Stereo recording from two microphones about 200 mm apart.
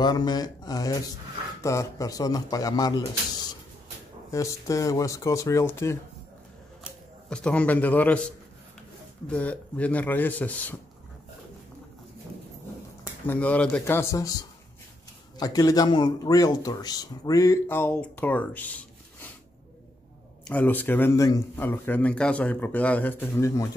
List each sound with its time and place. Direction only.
0.0 s a man's voice: 20° left (ahead or behind)
4.3 s a man's voice: 15° left (ahead or behind)
7.2 s a man's voice: 5° left (ahead or behind)
9.3 s a man's voice: 5° left (ahead or behind)
13.3 s a man's voice: 5° left (ahead or behind)
15.3 s a man's voice: 20° left (ahead or behind)
20.4 s a man's voice: 10° left (ahead or behind)